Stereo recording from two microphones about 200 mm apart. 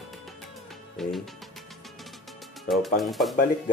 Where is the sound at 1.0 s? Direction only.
Centre (ahead or behind).